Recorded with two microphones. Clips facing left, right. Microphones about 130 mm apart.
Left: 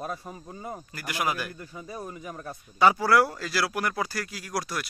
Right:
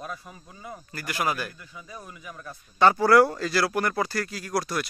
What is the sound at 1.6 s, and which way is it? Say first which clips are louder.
Speech: left 5 dB; 40° left (ahead or behind).